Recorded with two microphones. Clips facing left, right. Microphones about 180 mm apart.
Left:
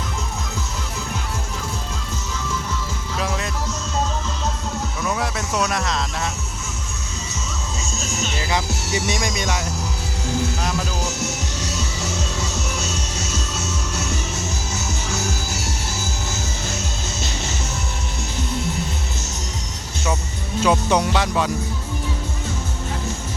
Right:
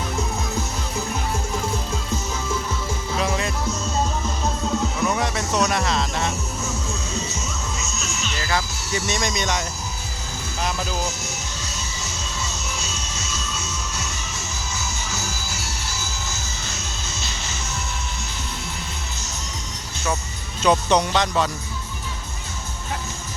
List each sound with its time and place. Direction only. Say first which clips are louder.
3.2 s music: right 1 dB; centre (ahead or behind)
5.0 s a sound: right 1 dB; centre (ahead or behind)
7.8 s music: left 3 dB; 35° left (ahead or behind)
8.4 s music: even; 15° left (ahead or behind)
9.0 s speech: right 1 dB; 10° left (ahead or behind)
11.2 s music: left 6 dB; 65° left (ahead or behind)
20.6 s speech: even; 5° left (ahead or behind)